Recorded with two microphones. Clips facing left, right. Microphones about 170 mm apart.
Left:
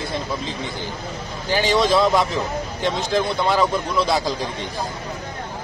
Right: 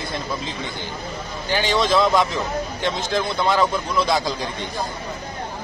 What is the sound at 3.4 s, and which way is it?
Speech, 5° left (ahead or behind).